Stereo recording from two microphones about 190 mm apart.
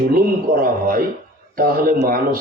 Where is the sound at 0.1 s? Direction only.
50° right (ahead or behind).